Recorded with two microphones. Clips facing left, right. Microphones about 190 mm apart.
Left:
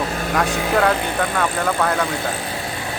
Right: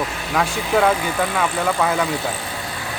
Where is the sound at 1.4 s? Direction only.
5° right (ahead or behind).